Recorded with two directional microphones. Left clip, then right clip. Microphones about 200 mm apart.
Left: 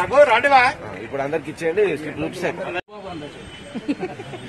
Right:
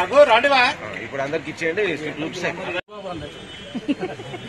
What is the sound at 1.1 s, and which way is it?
Speech, 45° left (ahead or behind).